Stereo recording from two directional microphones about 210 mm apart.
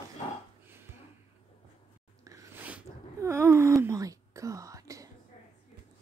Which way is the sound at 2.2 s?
10° right (ahead or behind).